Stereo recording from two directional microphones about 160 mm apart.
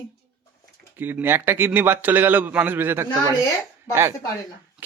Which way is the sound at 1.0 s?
15° right (ahead or behind).